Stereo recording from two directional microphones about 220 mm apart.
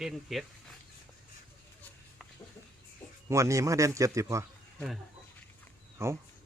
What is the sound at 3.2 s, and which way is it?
A man's voice, 15° right (ahead or behind).